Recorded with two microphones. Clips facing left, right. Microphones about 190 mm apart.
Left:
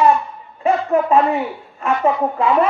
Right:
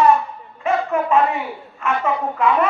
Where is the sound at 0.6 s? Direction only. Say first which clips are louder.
Left 3 dB; 35° left (ahead or behind).